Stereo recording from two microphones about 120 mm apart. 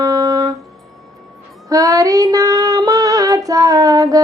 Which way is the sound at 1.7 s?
30° right (ahead or behind).